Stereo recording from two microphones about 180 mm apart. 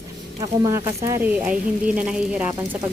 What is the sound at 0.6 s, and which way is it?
Speech, 15° right (ahead or behind).